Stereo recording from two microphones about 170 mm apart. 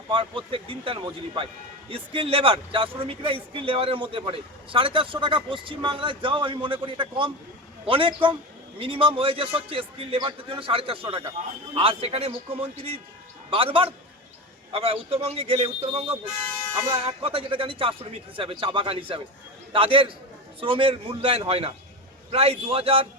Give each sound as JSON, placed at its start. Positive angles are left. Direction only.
{"t": 0.1, "sound": "speech", "side_deg": -30}